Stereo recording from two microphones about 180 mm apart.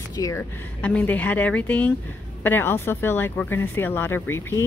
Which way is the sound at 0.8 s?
10° left (ahead or behind).